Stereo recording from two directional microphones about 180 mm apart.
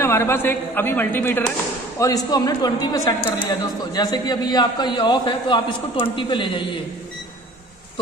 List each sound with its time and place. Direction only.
0.0 s a man's voice: 15° left (ahead or behind)